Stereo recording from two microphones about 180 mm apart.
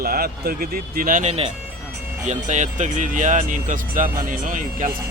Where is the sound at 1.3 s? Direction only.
35° right (ahead or behind).